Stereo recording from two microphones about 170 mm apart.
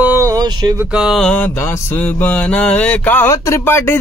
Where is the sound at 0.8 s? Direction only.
5° right (ahead or behind).